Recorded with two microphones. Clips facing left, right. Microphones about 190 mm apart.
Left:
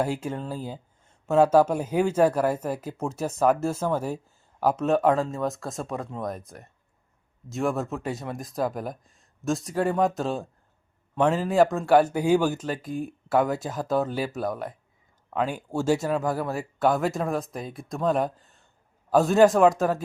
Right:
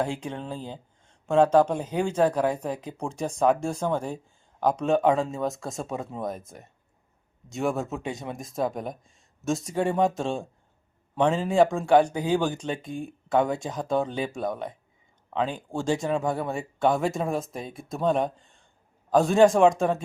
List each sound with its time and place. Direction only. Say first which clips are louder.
0.0 s speech: left 2 dB; 5° left (ahead or behind)